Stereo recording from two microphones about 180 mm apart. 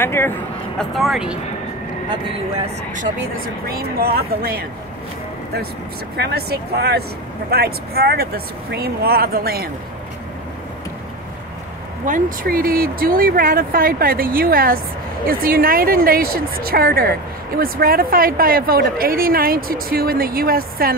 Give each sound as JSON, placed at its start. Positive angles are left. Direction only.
{"t": 0.0, "sound": "speech", "side_deg": 10}
{"t": 0.7, "sound": "speech", "side_deg": 0}
{"t": 2.6, "sound": "speech", "side_deg": -45}
{"t": 3.6, "sound": "speech", "side_deg": -60}
{"t": 6.1, "sound": "speech", "side_deg": -65}
{"t": 12.0, "sound": "speech", "side_deg": -50}